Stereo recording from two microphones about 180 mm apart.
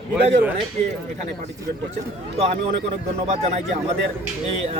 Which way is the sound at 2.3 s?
35° right (ahead or behind).